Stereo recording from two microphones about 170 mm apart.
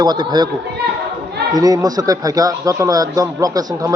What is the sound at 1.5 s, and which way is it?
Speech, 20° right (ahead or behind).